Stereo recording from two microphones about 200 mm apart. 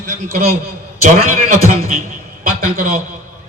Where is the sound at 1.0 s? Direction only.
35° right (ahead or behind).